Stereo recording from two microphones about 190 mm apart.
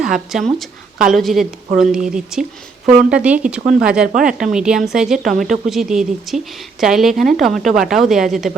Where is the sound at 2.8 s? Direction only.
40° right (ahead or behind).